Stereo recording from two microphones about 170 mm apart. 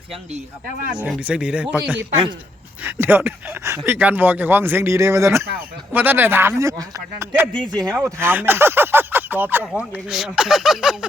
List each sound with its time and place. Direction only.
0.9 s speech: 5° right (ahead or behind)
7.4 s speech: 5° left (ahead or behind)
7.7 s speech: 20° right (ahead or behind); by 10.9 s 5° right (ahead or behind)